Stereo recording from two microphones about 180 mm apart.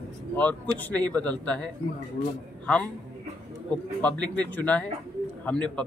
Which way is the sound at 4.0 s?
5° left (ahead or behind).